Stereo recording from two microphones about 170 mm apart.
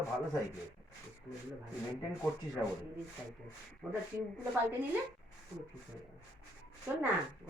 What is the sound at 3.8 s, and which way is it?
Speech, 5° left (ahead or behind).